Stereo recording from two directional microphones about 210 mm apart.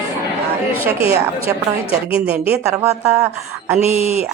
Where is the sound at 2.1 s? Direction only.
5° right (ahead or behind).